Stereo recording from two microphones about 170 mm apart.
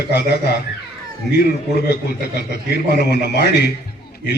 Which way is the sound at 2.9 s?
75° left (ahead or behind).